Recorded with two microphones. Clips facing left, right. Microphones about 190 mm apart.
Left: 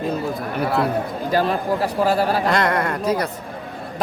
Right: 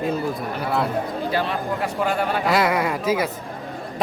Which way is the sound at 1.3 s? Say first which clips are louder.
Left 8 dB; 40° left (ahead or behind).